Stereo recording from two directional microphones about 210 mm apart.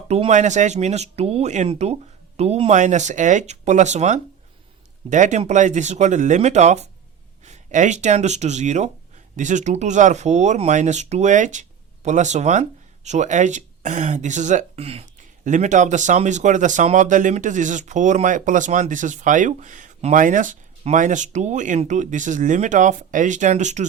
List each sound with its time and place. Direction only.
0.1 s speech: 30° right (ahead or behind)